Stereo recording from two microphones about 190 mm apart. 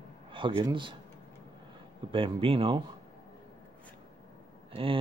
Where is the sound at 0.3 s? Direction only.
25° right (ahead or behind).